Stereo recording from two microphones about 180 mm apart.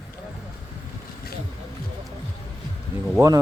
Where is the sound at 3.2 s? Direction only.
20° right (ahead or behind).